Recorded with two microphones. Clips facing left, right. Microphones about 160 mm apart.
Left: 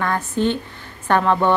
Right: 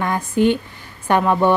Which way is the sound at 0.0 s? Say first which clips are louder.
Right 3 dB; 10° right (ahead or behind).